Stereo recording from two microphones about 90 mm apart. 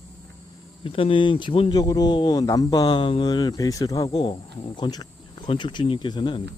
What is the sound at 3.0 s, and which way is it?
A man's voice, 70° left (ahead or behind).